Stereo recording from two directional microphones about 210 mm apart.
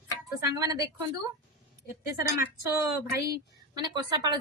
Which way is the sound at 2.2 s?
10° right (ahead or behind).